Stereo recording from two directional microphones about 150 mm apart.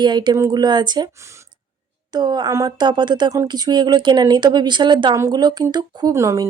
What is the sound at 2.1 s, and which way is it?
Speech, 30° right (ahead or behind).